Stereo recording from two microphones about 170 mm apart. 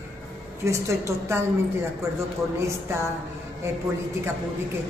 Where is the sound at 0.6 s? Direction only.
15° right (ahead or behind).